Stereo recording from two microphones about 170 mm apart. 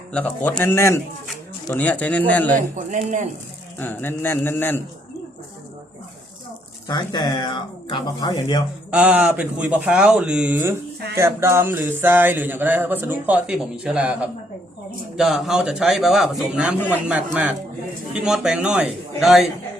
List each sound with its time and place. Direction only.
0.1 s speech: 5° left (ahead or behind)
2.6 s speech: 50° right (ahead or behind)
3.8 s speech: 10° left (ahead or behind)
6.8 s speech: 25° left (ahead or behind)
8.9 s a man's voice: 5° right (ahead or behind)
18.1 s a man's voice: 5° right (ahead or behind)